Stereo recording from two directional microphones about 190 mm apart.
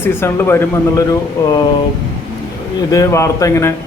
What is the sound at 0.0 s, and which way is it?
A man's voice, 10° left (ahead or behind).